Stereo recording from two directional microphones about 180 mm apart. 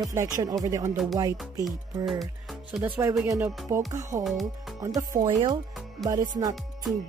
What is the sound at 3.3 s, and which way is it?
Speech, 15° right (ahead or behind).